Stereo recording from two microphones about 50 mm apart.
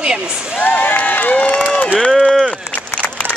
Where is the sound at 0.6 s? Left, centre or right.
Left.